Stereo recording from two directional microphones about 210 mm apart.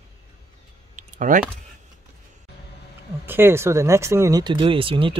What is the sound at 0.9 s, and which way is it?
Typing, 40° right (ahead or behind).